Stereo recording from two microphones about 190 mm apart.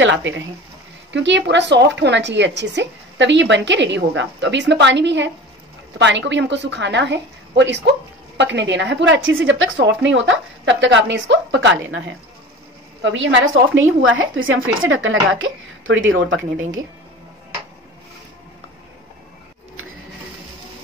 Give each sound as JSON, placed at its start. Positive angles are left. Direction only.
{"t": 0.0, "sound": "speech", "side_deg": -75}
{"t": 13.0, "sound": "speech", "side_deg": -75}
{"t": 13.7, "sound": "a woman's voice", "side_deg": -90}